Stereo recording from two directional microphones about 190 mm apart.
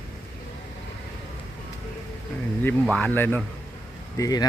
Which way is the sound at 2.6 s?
5° left (ahead or behind).